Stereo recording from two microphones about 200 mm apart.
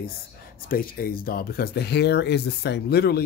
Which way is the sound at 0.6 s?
45° left (ahead or behind).